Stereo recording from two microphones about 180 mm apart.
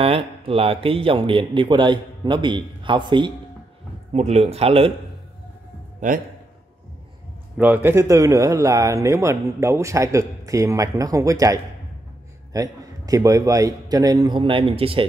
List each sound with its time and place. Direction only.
0.0 s a man's voice: 35° right (ahead or behind)
4.1 s speech: 35° right (ahead or behind)
5.9 s a man's voice: 45° right (ahead or behind)
7.5 s a man's voice: 10° right (ahead or behind); by 15.0 s 30° right (ahead or behind)